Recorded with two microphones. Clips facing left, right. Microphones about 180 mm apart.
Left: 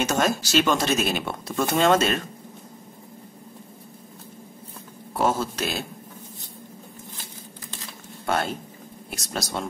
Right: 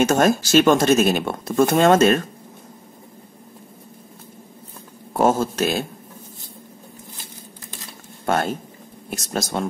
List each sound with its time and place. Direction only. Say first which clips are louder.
0.0 s speech: right 6 dB; 50° right (ahead or behind)
5.1 s speech: right 5 dB; 45° right (ahead or behind)
8.3 s speech: right 4 dB; 50° right (ahead or behind)